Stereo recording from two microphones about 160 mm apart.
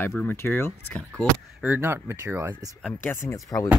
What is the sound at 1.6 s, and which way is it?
Speech, 10° right (ahead or behind).